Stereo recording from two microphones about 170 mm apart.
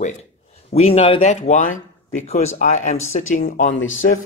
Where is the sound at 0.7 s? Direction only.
35° left (ahead or behind).